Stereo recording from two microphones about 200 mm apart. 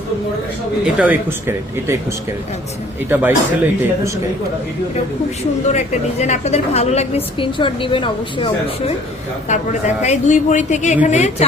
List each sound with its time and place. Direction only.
0.9 s speech: 10° right (ahead or behind)
5.7 s a woman's voice: 35° left (ahead or behind)
9.5 s a woman's voice: 35° left (ahead or behind)